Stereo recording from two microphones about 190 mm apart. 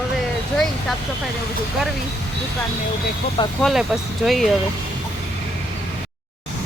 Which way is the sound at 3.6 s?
Centre (ahead or behind).